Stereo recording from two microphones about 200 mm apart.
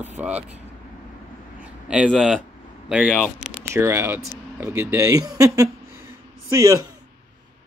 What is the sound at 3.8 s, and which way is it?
Speech, 10° right (ahead or behind).